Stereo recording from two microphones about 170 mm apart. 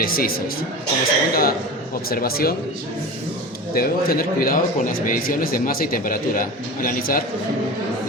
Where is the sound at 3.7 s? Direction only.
60° left (ahead or behind).